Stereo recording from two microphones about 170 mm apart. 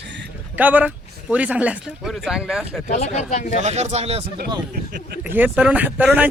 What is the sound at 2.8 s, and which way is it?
Speech, 45° left (ahead or behind).